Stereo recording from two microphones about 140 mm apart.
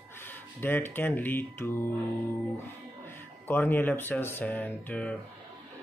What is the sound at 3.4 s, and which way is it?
Speech, 15° left (ahead or behind).